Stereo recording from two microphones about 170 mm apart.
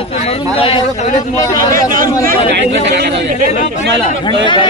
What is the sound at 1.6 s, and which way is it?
Speech, 55° right (ahead or behind).